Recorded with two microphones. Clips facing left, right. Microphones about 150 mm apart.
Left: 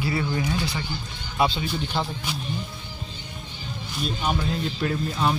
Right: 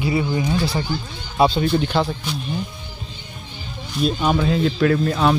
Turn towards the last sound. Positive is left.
turn(degrees=-90)